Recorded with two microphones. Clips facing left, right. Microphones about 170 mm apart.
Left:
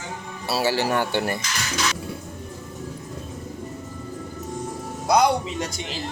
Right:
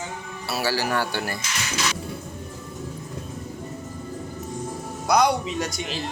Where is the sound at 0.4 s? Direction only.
20° left (ahead or behind).